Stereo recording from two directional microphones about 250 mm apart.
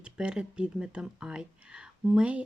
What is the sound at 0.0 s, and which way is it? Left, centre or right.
Speech, centre.